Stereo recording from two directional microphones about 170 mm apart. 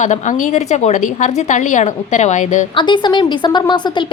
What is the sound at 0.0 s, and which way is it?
A woman's voice, 45° left (ahead or behind).